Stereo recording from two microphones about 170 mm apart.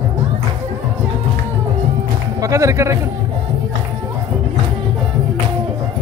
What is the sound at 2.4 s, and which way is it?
Music, 20° right (ahead or behind).